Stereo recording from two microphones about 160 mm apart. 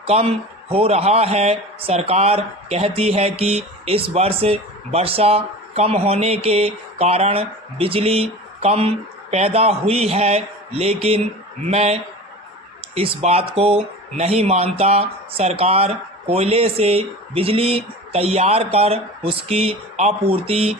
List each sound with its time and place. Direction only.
0.0 s speech: 40° right (ahead or behind)